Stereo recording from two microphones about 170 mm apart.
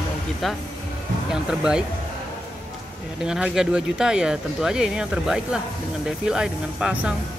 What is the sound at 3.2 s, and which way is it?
Speech, 5° right (ahead or behind).